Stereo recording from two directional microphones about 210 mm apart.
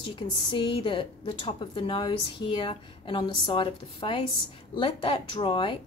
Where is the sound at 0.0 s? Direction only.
25° left (ahead or behind).